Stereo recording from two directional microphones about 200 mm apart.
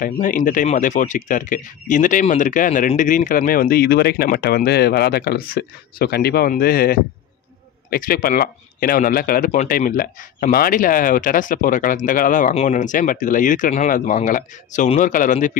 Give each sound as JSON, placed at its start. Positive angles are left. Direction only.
{"t": 0.0, "sound": "speech", "side_deg": 40}